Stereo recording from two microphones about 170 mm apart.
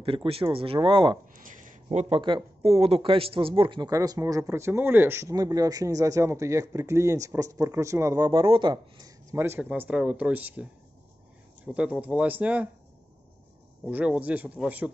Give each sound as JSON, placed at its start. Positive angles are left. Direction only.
{"t": 0.0, "sound": "speech", "side_deg": -30}
{"t": 1.3, "sound": "speech", "side_deg": -50}
{"t": 8.3, "sound": "speech", "side_deg": -30}
{"t": 13.8, "sound": "speech", "side_deg": -10}